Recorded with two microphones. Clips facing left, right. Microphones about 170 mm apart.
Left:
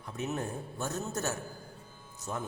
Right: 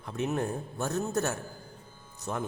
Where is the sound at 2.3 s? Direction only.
75° right (ahead or behind).